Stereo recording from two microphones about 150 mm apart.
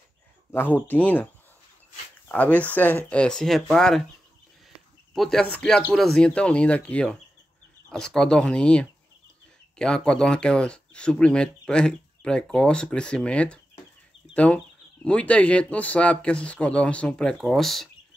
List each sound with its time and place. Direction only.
0.5 s speech: 15° left (ahead or behind)
5.1 s speech: centre (ahead or behind)